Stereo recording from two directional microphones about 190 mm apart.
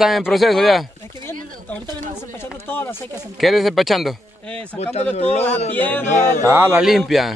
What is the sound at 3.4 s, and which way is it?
Speech, centre (ahead or behind).